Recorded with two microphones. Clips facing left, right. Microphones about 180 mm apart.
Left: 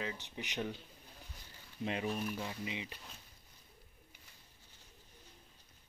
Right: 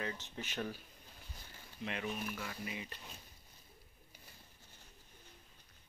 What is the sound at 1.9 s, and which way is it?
Speech, 35° left (ahead or behind).